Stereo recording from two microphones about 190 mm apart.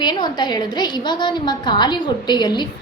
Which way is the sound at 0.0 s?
20° left (ahead or behind).